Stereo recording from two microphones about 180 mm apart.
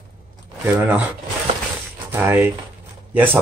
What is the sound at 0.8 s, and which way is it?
Speech, 10° right (ahead or behind).